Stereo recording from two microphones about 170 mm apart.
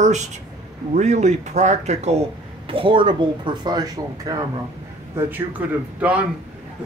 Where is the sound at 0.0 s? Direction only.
45° right (ahead or behind).